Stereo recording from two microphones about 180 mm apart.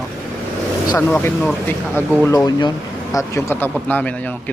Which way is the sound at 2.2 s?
20° left (ahead or behind).